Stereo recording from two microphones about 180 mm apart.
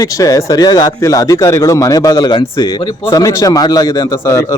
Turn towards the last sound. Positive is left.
turn(degrees=15)  # may be behind; listen again after turning